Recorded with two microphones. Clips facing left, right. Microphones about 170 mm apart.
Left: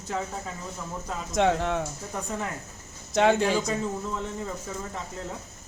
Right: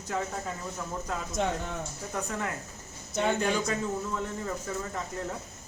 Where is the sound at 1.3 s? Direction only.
80° left.